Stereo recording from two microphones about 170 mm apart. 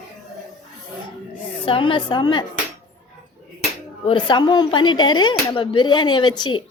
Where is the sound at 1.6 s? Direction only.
30° left (ahead or behind).